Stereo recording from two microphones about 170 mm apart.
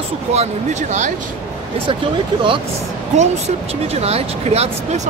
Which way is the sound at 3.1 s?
40° right (ahead or behind).